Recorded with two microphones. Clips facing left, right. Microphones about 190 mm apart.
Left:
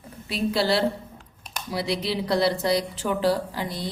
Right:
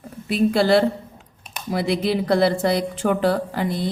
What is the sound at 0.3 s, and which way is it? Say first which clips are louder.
A woman's voice: right 6 dB; 50° right (ahead or behind).